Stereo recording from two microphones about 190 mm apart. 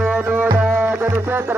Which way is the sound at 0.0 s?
10° right (ahead or behind).